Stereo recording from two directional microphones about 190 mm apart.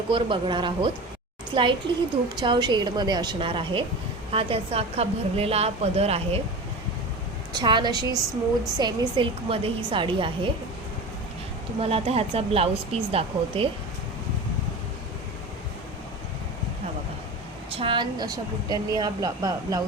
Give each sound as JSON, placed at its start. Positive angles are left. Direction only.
{"t": 0.1, "sound": "a woman's voice", "side_deg": -25}
{"t": 7.5, "sound": "a woman's voice", "side_deg": -25}
{"t": 11.8, "sound": "a woman's voice", "side_deg": -30}
{"t": 17.7, "sound": "a woman's voice", "side_deg": -25}